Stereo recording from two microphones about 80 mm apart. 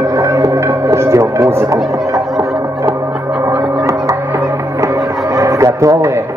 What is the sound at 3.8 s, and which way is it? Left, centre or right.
Music, right.